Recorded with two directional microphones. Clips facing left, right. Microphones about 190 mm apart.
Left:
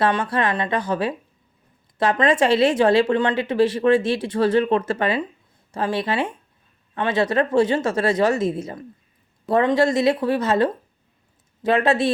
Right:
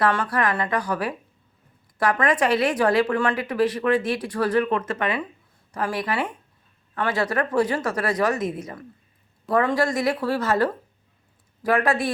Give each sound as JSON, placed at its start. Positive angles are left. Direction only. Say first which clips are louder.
{"t": 0.0, "sound": "a woman's voice", "louder": "left 2 dB", "side_deg": 25}